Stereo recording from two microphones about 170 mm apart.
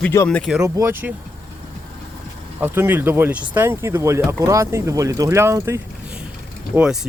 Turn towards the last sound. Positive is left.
turn(degrees=-5)  # may be behind; listen again after turning